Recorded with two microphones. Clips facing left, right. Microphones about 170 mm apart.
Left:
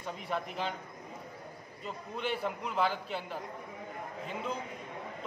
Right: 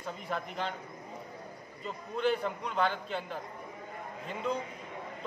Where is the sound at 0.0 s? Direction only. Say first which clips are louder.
Left 1 dB; centre (ahead or behind).